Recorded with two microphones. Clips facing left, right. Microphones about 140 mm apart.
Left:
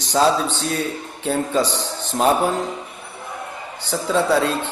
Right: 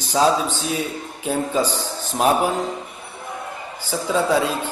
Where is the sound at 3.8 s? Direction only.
10° right (ahead or behind).